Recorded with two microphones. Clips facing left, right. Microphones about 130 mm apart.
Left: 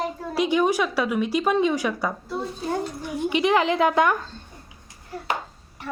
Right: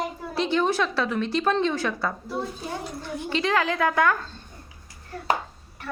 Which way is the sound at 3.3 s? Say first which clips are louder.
Left 3 dB; 15° left (ahead or behind).